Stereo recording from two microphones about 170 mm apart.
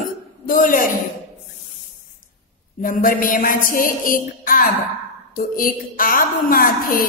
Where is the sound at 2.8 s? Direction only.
55° left (ahead or behind).